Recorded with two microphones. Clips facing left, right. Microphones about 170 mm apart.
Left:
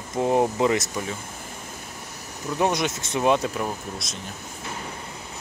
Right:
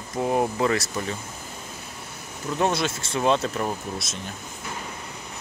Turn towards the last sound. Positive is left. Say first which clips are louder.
# right 2 dB
turn(degrees=-5)  # may be behind; listen again after turning